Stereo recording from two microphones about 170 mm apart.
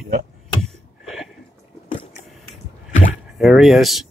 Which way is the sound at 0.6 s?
Centre (ahead or behind).